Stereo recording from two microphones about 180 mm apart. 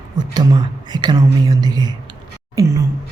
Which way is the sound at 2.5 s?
20° right (ahead or behind).